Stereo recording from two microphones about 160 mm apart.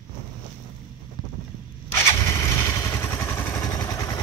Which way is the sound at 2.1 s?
20° left (ahead or behind).